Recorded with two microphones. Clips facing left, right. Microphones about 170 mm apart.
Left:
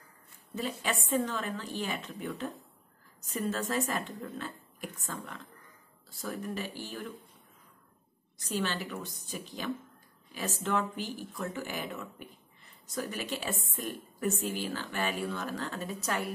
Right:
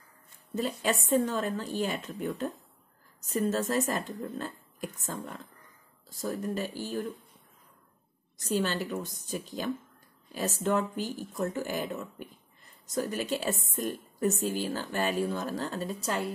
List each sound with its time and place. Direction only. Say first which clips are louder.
0.6 s a woman's voice: right 4 dB; 45° right (ahead or behind)
8.4 s speech: right 4 dB; 45° right (ahead or behind)
10.7 s a woman's voice: right 3 dB; 45° right (ahead or behind); by 16.3 s 30° right (ahead or behind)